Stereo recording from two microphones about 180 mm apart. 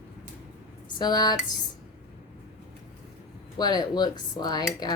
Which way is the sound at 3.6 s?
25° left (ahead or behind).